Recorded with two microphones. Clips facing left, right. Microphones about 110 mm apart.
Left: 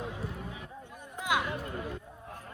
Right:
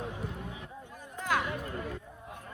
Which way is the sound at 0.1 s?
25° right (ahead or behind).